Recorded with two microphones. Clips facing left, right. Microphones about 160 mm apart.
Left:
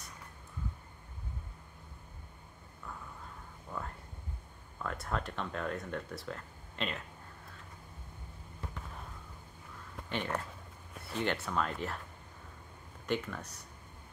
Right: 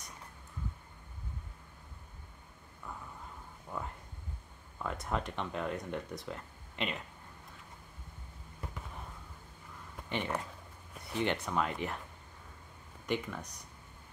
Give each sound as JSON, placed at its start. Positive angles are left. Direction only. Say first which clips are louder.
{"t": 3.7, "sound": "a sound", "louder": "right 1 dB", "side_deg": -10}
{"t": 4.8, "sound": "speech", "louder": "right 1 dB", "side_deg": -15}
{"t": 10.0, "sound": "speech", "louder": "even", "side_deg": -15}
{"t": 13.0, "sound": "speech", "louder": "even", "side_deg": -10}